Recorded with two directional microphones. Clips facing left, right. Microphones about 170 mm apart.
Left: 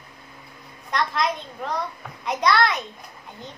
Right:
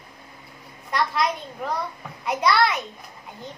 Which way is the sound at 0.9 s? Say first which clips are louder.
Even; 5° right (ahead or behind).